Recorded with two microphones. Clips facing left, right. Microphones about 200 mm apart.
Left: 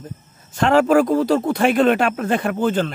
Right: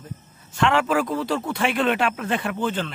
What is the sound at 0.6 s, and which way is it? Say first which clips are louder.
A man's voice: left 6 dB; 40° left (ahead or behind).